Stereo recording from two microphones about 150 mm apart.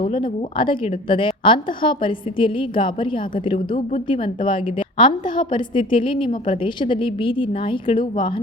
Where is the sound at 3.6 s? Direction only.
55° left (ahead or behind).